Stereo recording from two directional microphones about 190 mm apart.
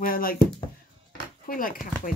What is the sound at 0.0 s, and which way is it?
Speech, 50° left (ahead or behind).